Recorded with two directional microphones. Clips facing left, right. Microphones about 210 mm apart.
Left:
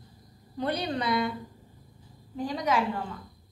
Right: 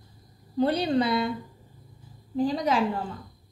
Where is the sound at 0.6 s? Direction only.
30° right (ahead or behind).